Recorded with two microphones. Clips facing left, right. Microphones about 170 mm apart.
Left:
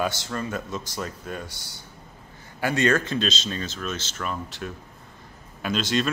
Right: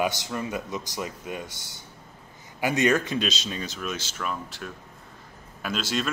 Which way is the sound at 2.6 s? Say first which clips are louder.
Even; 15° right (ahead or behind).